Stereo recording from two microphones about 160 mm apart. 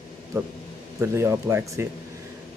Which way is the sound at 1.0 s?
20° right (ahead or behind).